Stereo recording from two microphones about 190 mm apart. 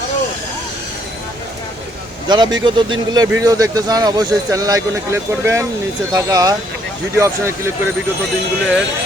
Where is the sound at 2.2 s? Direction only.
20° right (ahead or behind).